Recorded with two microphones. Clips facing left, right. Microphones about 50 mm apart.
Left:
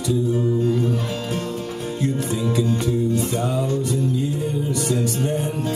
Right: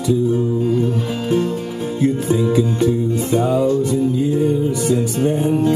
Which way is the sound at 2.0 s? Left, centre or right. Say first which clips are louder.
Right 7 dB; centre.